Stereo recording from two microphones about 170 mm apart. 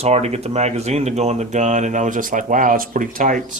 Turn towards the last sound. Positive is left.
turn(degrees=-50)  # may be behind; listen again after turning